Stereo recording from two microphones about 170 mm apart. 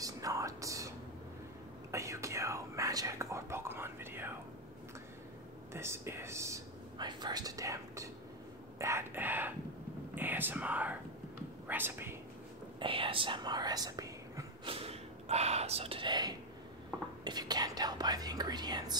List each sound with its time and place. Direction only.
0.0 s whispering: 20° right (ahead or behind)
5.7 s whispering: 15° right (ahead or behind)
8.7 s a sound: 15° right (ahead or behind)
10.1 s whispering: 10° right (ahead or behind)
12.7 s whispering: 30° right (ahead or behind)
14.7 s whispering: 35° right (ahead or behind)